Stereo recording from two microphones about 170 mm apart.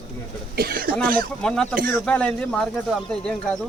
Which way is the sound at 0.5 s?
65° right (ahead or behind).